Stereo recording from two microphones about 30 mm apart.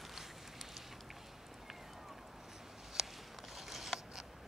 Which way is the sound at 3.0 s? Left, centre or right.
Centre.